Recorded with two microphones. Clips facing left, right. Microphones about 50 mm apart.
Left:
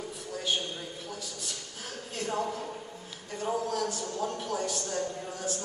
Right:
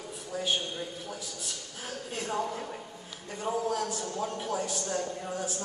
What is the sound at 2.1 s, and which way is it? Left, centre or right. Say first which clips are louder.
Speech: left 1 dB; centre.